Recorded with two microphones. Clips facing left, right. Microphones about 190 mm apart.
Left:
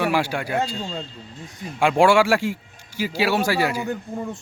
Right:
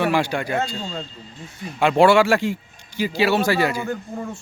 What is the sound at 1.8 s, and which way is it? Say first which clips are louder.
A man's voice: right 2 dB; 10° left (ahead or behind).